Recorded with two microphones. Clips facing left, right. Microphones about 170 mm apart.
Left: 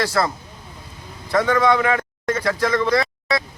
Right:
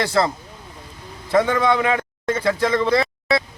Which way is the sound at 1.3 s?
20° right (ahead or behind).